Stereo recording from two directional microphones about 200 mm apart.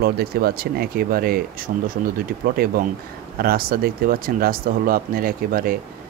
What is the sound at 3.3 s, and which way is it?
Speech, 50° right (ahead or behind).